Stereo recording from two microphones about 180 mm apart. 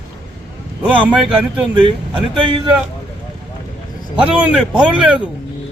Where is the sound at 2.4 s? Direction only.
30° right (ahead or behind).